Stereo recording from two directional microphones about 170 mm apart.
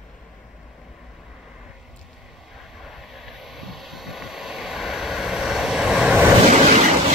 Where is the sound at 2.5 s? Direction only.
Centre (ahead or behind).